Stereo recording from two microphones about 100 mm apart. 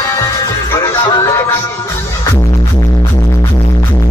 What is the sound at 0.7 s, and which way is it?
Music, 30° left (ahead or behind).